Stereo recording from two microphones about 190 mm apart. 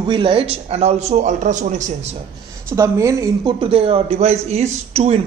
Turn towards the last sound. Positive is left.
turn(degrees=-35)  # may be behind; listen again after turning